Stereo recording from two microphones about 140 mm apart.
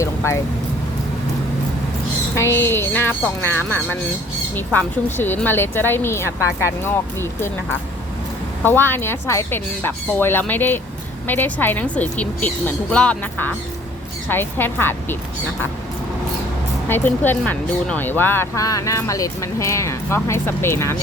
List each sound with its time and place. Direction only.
0.0 s vehicle: 20° left (ahead or behind)
2.3 s speech: 20° left (ahead or behind)
8.6 s speech: 15° left (ahead or behind)
16.9 s speech: 15° left (ahead or behind)